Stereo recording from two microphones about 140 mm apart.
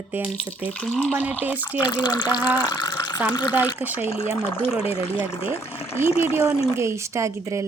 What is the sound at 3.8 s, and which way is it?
Speech, 10° right (ahead or behind).